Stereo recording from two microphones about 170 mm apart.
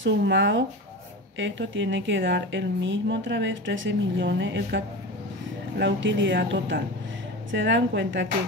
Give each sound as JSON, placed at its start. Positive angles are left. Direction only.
{"t": 0.0, "sound": "speech", "side_deg": -90}